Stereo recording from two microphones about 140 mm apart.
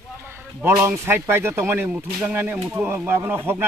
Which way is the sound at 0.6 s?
15° right (ahead or behind).